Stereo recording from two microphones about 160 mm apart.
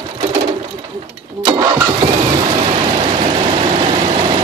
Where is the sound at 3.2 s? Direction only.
35° right (ahead or behind).